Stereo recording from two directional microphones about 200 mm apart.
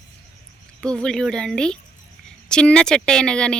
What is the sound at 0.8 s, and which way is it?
Speech, 5° left (ahead or behind).